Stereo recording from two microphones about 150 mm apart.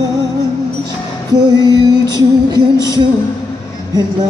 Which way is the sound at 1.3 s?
25° right (ahead or behind).